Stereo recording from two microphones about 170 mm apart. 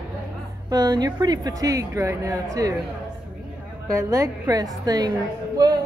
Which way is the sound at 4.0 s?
20° right (ahead or behind).